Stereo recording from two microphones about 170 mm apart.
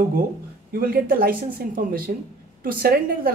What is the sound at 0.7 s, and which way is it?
Speech, 60° right (ahead or behind).